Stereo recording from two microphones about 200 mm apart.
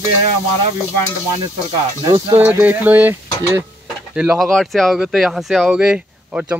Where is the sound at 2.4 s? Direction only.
10° right (ahead or behind).